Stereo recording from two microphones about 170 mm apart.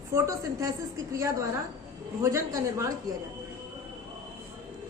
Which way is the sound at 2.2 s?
20° right (ahead or behind).